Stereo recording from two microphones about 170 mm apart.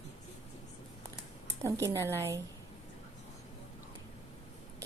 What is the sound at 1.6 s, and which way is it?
Speech, 15° right (ahead or behind).